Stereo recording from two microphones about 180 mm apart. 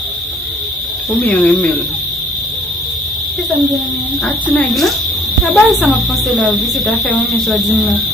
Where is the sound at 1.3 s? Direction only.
5° left (ahead or behind).